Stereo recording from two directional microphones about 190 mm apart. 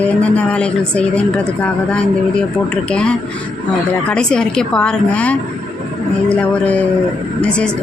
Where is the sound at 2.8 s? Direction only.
5° left (ahead or behind).